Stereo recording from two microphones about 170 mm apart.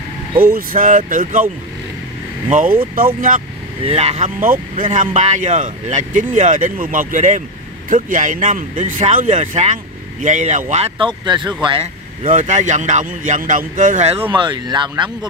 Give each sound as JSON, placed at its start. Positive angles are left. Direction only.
{"t": 0.4, "sound": "speech", "side_deg": -60}
{"t": 2.5, "sound": "speech", "side_deg": -55}
{"t": 3.8, "sound": "speech", "side_deg": -40}
{"t": 10.7, "sound": "speech", "side_deg": -35}
{"t": 14.3, "sound": "speech", "side_deg": -25}